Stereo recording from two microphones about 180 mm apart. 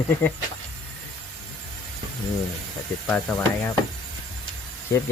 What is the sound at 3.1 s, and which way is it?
Speech, 10° left (ahead or behind).